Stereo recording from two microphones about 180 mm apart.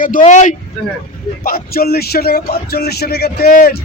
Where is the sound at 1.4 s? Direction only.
55° left (ahead or behind).